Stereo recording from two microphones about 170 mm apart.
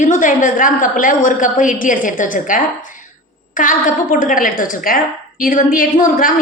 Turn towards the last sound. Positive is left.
turn(degrees=55)  # may be behind; listen again after turning